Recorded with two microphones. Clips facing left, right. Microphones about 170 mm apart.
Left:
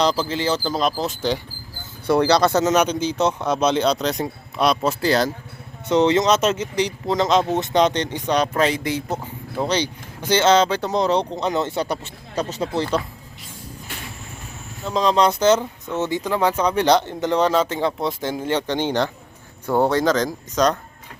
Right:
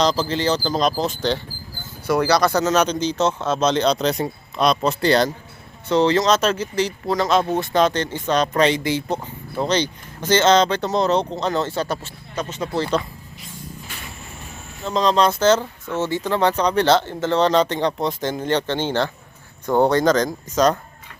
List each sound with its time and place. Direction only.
0.0 s speech: 10° left (ahead or behind)
2.0 s speech: 25° left (ahead or behind); by 5.3 s 5° left (ahead or behind)
5.9 s speech: 20° left (ahead or behind)
12.4 s speech: 35° left (ahead or behind)
12.7 s speech: 15° left (ahead or behind)
14.8 s speech: 10° left (ahead or behind)
19.6 s speech: 5° left (ahead or behind)